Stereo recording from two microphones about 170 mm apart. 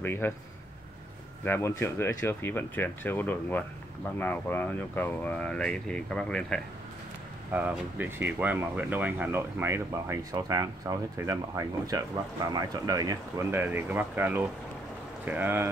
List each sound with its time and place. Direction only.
0.0 s speech: 10° left (ahead or behind)
1.4 s speech: 15° left (ahead or behind)
7.5 s speech: 10° right (ahead or behind)